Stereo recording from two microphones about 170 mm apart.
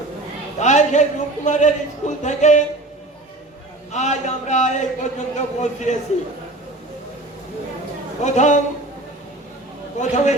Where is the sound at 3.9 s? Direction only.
45° left (ahead or behind).